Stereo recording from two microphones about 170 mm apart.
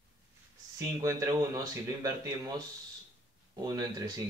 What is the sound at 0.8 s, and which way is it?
Speech, 20° right (ahead or behind).